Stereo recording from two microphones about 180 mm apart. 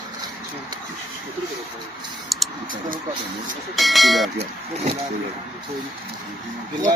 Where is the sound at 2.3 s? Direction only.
Centre (ahead or behind).